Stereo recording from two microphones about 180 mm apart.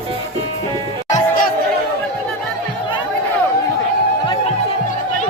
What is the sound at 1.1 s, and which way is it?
Music, 50° left (ahead or behind).